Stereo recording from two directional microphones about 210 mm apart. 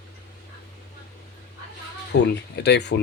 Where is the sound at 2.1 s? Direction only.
55° left (ahead or behind).